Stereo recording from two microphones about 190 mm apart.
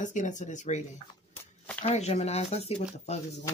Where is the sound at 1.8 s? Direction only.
35° left (ahead or behind).